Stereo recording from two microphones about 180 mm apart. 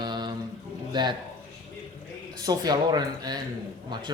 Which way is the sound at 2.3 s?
20° right (ahead or behind).